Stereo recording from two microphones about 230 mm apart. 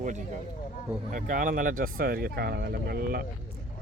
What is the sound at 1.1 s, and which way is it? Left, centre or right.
Speech, right.